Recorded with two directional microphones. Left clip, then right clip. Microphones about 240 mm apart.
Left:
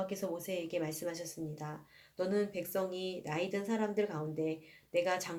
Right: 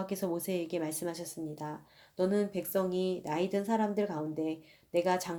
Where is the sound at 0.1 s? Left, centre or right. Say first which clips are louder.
Right 4 dB; right.